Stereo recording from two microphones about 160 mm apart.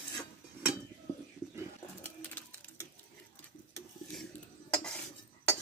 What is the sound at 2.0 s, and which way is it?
Bird, 10° left (ahead or behind).